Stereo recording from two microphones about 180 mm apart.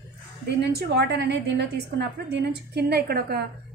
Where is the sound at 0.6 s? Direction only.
70° right (ahead or behind).